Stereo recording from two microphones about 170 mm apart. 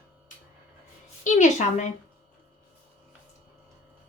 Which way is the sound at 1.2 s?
45° left (ahead or behind).